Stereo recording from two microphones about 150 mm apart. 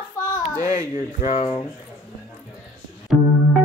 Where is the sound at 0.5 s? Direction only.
20° right (ahead or behind).